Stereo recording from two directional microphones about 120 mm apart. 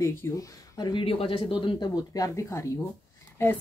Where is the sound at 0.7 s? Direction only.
45° left (ahead or behind).